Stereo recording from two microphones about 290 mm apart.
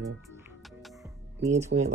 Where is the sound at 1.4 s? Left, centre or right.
Right.